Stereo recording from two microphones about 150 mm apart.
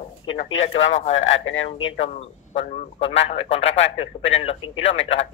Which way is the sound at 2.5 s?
40° left (ahead or behind).